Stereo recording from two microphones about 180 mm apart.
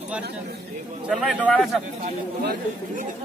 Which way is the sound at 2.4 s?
60° right (ahead or behind).